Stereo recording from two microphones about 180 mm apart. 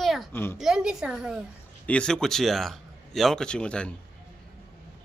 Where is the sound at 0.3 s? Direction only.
10° left (ahead or behind).